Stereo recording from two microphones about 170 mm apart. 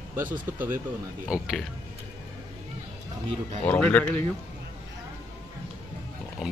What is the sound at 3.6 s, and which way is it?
Speech, 10° left (ahead or behind).